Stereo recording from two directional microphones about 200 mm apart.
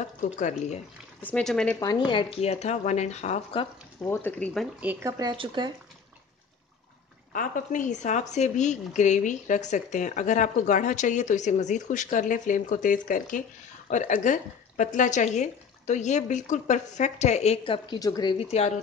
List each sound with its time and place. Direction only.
0.2 s speech: 40° left (ahead or behind)
1.2 s speech: 5° left (ahead or behind)
1.8 s speech: 20° left (ahead or behind)
4.0 s speech: 10° left (ahead or behind)
4.7 s speech: 10° right (ahead or behind)
5.2 s speech: 25° right (ahead or behind)
7.3 s speech: 40° left (ahead or behind); by 18.3 s 20° left (ahead or behind)
18.4 s speech: 30° left (ahead or behind)